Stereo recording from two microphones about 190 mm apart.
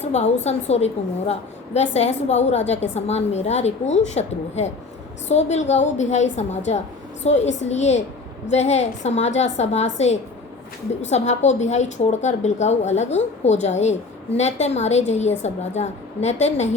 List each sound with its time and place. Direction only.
0.0 s a woman's voice: 35° left (ahead or behind)